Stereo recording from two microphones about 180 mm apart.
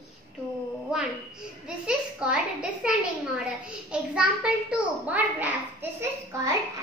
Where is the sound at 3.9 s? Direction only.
5° right (ahead or behind).